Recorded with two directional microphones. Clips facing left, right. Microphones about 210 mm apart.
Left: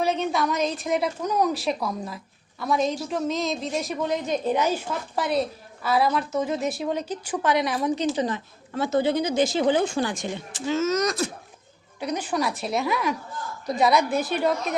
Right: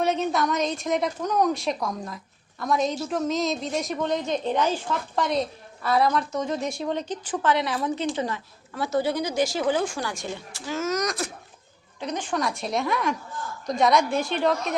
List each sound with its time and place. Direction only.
0.0 s a woman's voice: centre (ahead or behind); by 11.3 s 25° left (ahead or behind)
11.9 s a woman's voice: 10° left (ahead or behind)